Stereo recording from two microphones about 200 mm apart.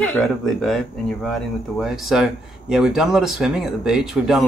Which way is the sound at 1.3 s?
Centre (ahead or behind).